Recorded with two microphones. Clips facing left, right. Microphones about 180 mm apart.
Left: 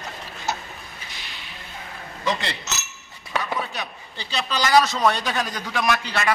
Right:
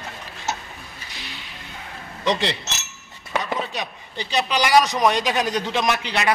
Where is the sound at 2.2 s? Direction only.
20° right (ahead or behind).